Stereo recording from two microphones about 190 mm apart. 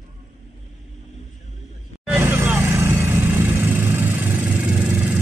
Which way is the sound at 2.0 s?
10° right (ahead or behind).